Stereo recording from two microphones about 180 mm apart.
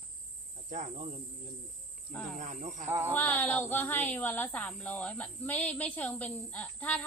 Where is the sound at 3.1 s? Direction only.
10° left (ahead or behind).